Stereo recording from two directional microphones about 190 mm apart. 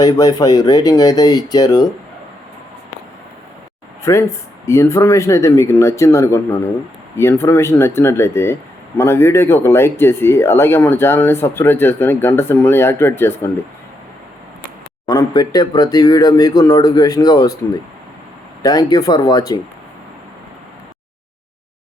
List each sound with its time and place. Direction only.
0.0 s speech: 20° left (ahead or behind)
4.0 s speech: 15° left (ahead or behind)
15.0 s speech: 20° left (ahead or behind)
18.6 s speech: 20° left (ahead or behind)